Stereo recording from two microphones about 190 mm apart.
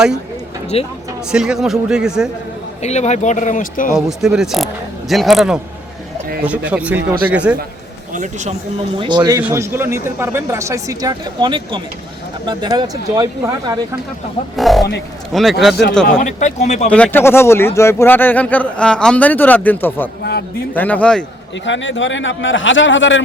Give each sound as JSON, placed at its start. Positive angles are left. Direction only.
{"t": 0.7, "sound": "speech", "side_deg": 30}
{"t": 1.3, "sound": "speech", "side_deg": -5}
{"t": 2.8, "sound": "speech", "side_deg": 35}
{"t": 3.9, "sound": "speech", "side_deg": -5}
{"t": 6.7, "sound": "speech", "side_deg": -5}
{"t": 8.1, "sound": "speech", "side_deg": -40}
{"t": 9.0, "sound": "speech", "side_deg": -25}
{"t": 14.5, "sound": "speech", "side_deg": 0}
{"t": 15.7, "sound": "speech", "side_deg": 60}
{"t": 16.1, "sound": "speech", "side_deg": 40}
{"t": 16.9, "sound": "speech", "side_deg": 10}
{"t": 21.6, "sound": "a man's voice", "side_deg": 75}